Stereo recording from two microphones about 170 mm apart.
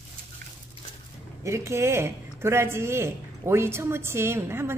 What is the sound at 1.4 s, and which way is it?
Speech, 15° right (ahead or behind).